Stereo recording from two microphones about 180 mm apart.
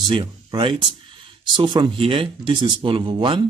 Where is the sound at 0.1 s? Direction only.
30° right (ahead or behind).